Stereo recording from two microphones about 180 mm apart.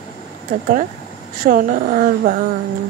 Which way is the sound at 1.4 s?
50° right (ahead or behind).